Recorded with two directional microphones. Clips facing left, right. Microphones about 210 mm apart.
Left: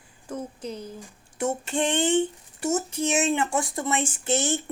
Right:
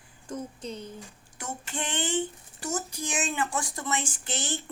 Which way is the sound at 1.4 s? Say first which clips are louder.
Left 10 dB; 25° left (ahead or behind).